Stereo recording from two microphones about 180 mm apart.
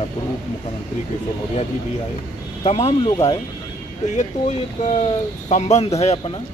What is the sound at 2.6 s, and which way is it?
Speech, 35° left (ahead or behind).